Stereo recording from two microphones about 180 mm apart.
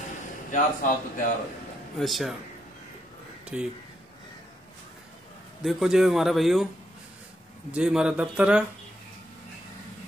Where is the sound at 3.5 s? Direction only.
5° right (ahead or behind).